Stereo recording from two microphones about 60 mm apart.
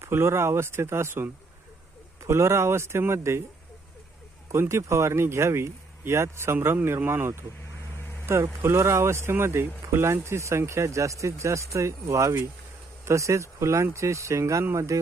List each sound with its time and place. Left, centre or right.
0.0 s speech: right
4.7 s speech: right